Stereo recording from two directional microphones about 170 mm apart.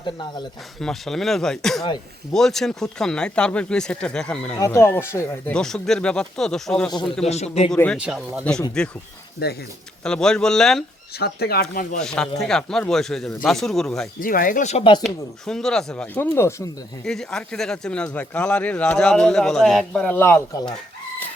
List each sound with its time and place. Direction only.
0.8 s speech: centre (ahead or behind)
4.5 s speech: 20° left (ahead or behind)
7.3 s speech: 40° left (ahead or behind)
7.7 s speech: 5° left (ahead or behind)
7.9 s speech: 5° right (ahead or behind)
8.8 s speech: 5° left (ahead or behind)
9.4 s speech: 70° left (ahead or behind)
10.0 s speech: 5° left (ahead or behind)
11.2 s speech: 65° left (ahead or behind)
11.9 s speech: 5° left (ahead or behind)
14.2 s speech: 55° left (ahead or behind)
15.0 s speech: 5° left (ahead or behind)
17.1 s speech: 5° left (ahead or behind)